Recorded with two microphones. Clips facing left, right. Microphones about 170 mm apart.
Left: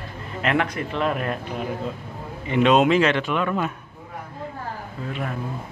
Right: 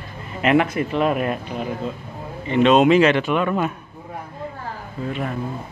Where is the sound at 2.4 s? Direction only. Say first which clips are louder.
Right 3 dB; 10° left (ahead or behind).